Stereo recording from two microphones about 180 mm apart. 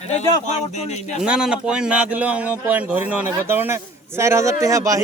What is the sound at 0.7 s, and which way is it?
Speech, 40° left (ahead or behind).